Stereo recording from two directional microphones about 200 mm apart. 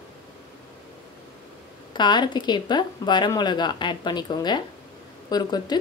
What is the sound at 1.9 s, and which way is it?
Speech, 20° left (ahead or behind).